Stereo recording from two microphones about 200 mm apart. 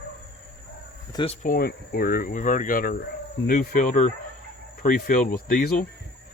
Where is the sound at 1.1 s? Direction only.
30° left (ahead or behind).